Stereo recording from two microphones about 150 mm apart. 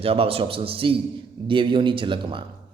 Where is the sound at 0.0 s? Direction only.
40° right (ahead or behind).